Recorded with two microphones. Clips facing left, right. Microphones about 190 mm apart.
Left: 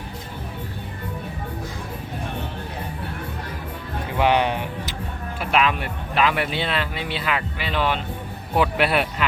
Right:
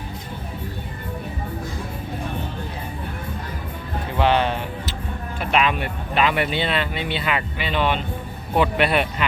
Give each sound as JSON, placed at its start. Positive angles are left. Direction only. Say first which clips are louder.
{"t": 4.2, "sound": "music", "louder": "even", "side_deg": 15}
{"t": 5.4, "sound": "speech", "louder": "even", "side_deg": 0}